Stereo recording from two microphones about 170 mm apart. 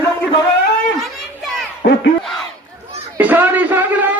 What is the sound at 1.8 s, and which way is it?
Speech, 60° left (ahead or behind).